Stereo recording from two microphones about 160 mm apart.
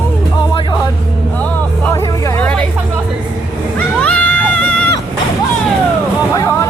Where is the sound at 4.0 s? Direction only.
5° left (ahead or behind).